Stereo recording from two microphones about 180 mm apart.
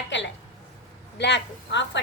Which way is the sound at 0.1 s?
90° left.